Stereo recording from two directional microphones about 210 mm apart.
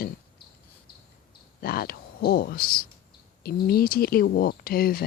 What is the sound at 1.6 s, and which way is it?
Speech, 45° left (ahead or behind).